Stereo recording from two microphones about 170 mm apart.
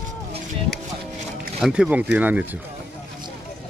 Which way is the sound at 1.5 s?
5° right (ahead or behind).